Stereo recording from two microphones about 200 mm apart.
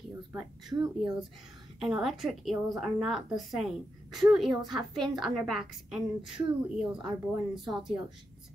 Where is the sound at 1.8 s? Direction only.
Centre (ahead or behind).